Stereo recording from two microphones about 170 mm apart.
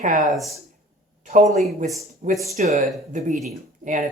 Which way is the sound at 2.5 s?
40° right (ahead or behind).